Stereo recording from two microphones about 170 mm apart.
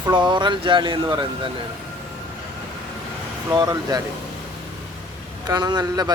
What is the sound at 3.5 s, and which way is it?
Speech, 20° right (ahead or behind).